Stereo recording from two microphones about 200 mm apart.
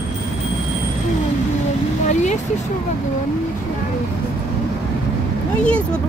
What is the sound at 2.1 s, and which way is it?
Vehicle, 35° left (ahead or behind).